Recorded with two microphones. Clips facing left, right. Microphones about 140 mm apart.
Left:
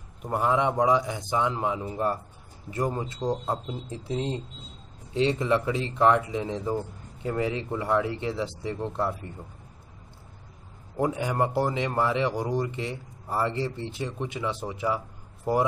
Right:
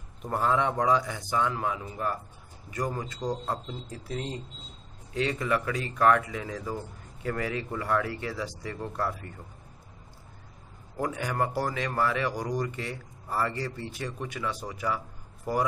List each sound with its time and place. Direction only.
0.2 s speech: 15° left (ahead or behind)
11.0 s speech: 20° left (ahead or behind)